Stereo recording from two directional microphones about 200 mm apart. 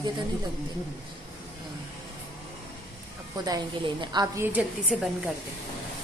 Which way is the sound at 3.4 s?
20° right (ahead or behind).